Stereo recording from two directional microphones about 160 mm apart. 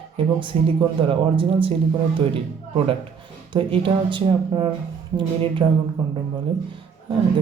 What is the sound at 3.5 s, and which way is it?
Speech, 35° right (ahead or behind).